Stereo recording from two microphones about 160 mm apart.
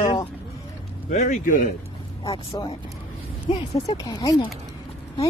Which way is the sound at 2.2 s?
25° left (ahead or behind).